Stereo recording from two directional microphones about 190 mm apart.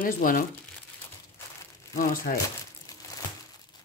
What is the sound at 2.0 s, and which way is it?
Speech, 45° left (ahead or behind).